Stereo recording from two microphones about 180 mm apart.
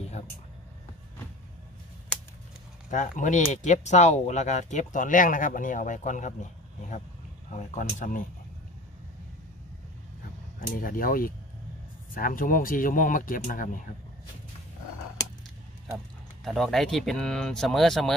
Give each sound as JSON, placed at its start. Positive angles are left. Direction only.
{"t": 2.9, "sound": "speech", "side_deg": 45}
{"t": 10.7, "sound": "speech", "side_deg": 50}
{"t": 16.4, "sound": "speech", "side_deg": 0}